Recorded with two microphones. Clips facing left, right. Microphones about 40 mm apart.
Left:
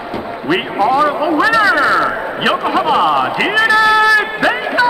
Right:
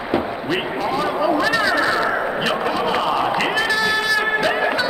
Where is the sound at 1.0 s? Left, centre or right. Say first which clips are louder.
Left 6 dB; left.